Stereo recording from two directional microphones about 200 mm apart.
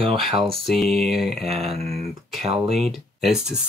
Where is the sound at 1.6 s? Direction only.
30° right (ahead or behind).